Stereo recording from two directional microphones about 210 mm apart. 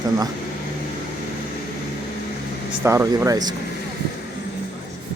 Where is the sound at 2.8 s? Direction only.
15° right (ahead or behind).